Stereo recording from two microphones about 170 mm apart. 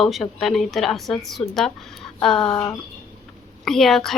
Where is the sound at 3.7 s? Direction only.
Centre (ahead or behind).